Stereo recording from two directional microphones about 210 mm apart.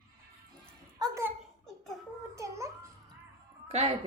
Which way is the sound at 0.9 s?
15° right (ahead or behind).